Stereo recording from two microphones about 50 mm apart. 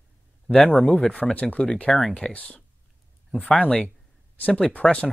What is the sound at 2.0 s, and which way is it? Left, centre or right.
Speech, centre.